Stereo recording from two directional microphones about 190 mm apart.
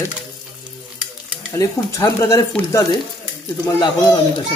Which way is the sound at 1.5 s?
15° left (ahead or behind).